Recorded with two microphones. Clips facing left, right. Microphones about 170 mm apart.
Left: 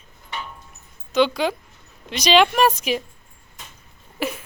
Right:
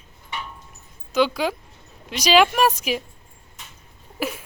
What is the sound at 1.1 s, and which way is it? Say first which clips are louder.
Speech: left 2 dB; 5° right (ahead or behind).